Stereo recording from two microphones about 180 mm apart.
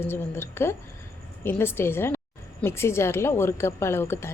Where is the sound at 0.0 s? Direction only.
10° left (ahead or behind).